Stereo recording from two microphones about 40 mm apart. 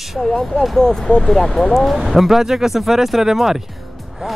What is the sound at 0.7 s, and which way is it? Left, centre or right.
Speech, centre.